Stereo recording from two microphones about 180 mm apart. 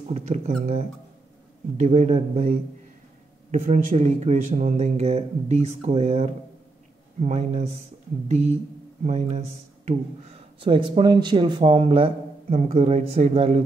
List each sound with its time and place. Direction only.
0.1 s speech: 40° right (ahead or behind)
3.5 s speech: 40° right (ahead or behind)